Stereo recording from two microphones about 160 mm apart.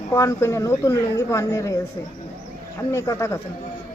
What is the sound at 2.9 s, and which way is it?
Speech, 20° left (ahead or behind).